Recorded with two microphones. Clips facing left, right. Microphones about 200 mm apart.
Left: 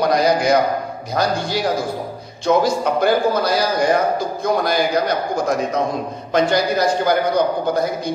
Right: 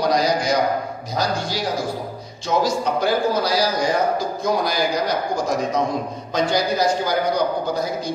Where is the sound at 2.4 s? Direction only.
55° left (ahead or behind).